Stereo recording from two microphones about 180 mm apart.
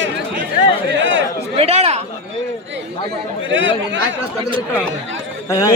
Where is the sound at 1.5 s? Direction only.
35° right (ahead or behind).